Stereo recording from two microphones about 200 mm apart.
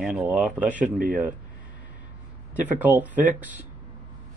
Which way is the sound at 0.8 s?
45° right (ahead or behind).